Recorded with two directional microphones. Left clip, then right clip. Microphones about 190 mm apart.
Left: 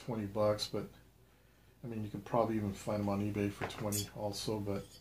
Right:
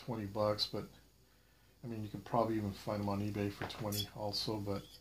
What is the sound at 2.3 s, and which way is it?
Speech, 30° right (ahead or behind).